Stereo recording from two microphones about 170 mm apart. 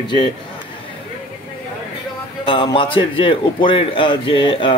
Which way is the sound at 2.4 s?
30° left (ahead or behind).